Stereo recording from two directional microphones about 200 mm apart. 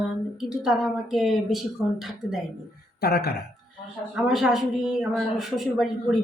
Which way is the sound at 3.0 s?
50° left (ahead or behind).